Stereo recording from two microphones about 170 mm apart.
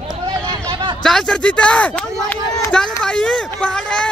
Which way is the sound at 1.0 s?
5° left (ahead or behind).